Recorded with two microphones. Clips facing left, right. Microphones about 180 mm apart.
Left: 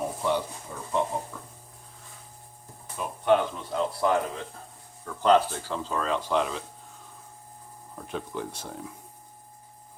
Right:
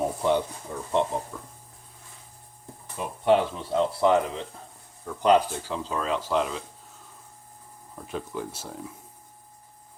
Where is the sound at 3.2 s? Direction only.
30° right (ahead or behind); by 6.6 s centre (ahead or behind).